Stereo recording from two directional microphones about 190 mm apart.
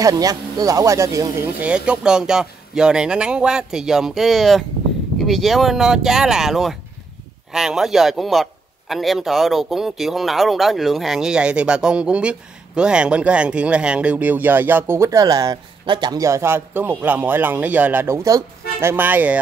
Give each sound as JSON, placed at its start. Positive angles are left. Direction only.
{"t": 0.0, "sound": "speech", "side_deg": -20}
{"t": 1.6, "sound": "a man's voice", "side_deg": -5}